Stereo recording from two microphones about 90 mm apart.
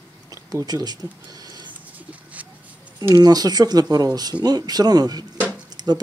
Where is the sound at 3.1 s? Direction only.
45° right (ahead or behind).